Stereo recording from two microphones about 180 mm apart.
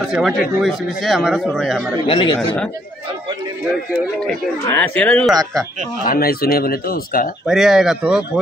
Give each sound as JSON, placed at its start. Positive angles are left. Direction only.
{"t": 0.0, "sound": "speech", "side_deg": 0}
{"t": 2.0, "sound": "speech", "side_deg": 25}
{"t": 4.6, "sound": "speech", "side_deg": 10}
{"t": 5.3, "sound": "speech", "side_deg": -20}
{"t": 6.0, "sound": "speech", "side_deg": 55}
{"t": 7.4, "sound": "speech", "side_deg": 0}